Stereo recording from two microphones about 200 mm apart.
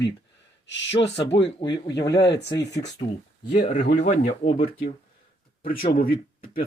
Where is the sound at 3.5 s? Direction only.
35° left (ahead or behind).